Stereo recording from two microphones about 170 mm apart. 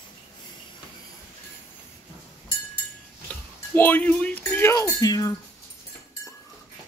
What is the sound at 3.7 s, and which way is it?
Speech, 10° left (ahead or behind).